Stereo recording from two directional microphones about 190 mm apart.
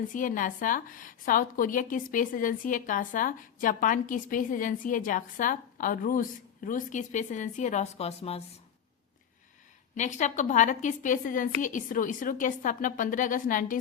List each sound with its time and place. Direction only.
0.1 s a woman's voice: 45° left (ahead or behind)
9.9 s a woman's voice: 40° left (ahead or behind)